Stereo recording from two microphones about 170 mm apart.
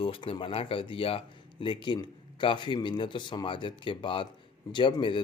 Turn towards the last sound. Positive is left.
turn(degrees=30)  # may be behind; listen again after turning